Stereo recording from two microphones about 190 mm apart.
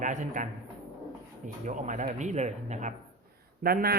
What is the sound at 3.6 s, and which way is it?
Speech, 55° right (ahead or behind).